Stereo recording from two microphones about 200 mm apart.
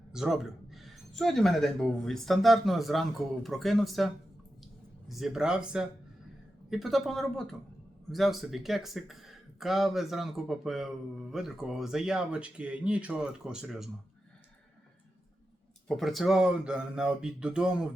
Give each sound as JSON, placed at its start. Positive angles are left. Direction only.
{"t": 0.1, "sound": "speech", "side_deg": 0}
{"t": 15.9, "sound": "speech", "side_deg": 0}